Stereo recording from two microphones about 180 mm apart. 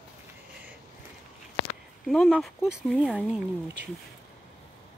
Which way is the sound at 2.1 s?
Centre (ahead or behind).